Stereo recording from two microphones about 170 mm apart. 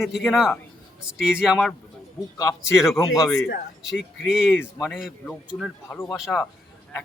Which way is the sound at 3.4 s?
90° left.